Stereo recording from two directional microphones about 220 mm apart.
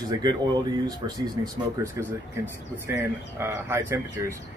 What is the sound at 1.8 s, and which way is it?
Speech, 15° right (ahead or behind).